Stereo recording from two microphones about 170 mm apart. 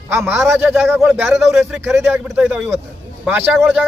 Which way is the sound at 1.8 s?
15° right (ahead or behind).